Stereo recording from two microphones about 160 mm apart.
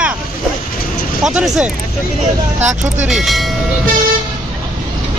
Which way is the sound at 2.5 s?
50° right (ahead or behind).